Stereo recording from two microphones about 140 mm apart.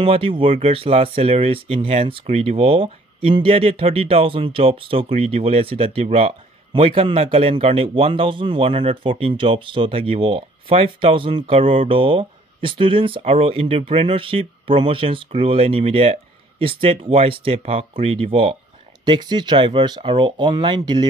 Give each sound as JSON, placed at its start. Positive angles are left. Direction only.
{"t": 0.0, "sound": "speech", "side_deg": -40}
{"t": 19.0, "sound": "speech", "side_deg": -30}